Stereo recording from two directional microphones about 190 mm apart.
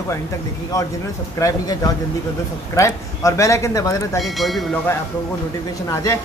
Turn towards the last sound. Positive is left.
turn(degrees=15)  # may be behind; listen again after turning